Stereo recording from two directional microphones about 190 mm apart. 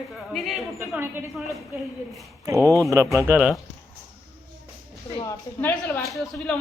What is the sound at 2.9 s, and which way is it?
Speech, 15° right (ahead or behind).